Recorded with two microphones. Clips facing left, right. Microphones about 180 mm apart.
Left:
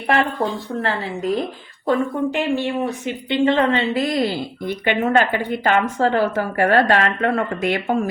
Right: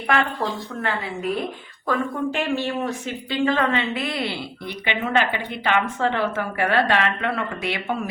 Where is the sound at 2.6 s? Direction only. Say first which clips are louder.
Left 3 dB; 15° left (ahead or behind).